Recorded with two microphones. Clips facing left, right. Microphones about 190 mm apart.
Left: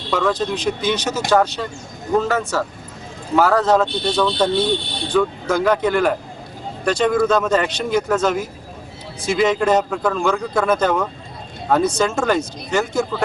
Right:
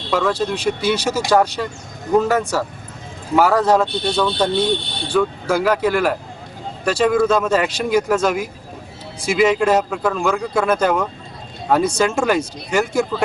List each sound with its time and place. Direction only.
0.1 s speech: 5° right (ahead or behind)